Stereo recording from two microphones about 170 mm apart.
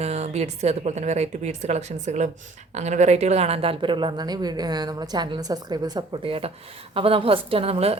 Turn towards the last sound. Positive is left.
turn(degrees=-35)  # may be behind; listen again after turning